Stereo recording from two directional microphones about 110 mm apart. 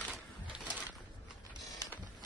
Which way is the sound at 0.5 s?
10° right (ahead or behind).